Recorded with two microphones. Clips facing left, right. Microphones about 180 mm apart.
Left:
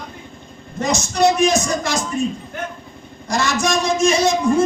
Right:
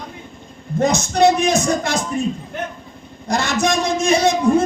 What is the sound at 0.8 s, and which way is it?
A man's voice, 60° right (ahead or behind).